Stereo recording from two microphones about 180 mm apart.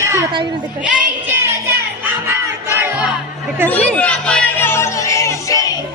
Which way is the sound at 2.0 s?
15° right (ahead or behind).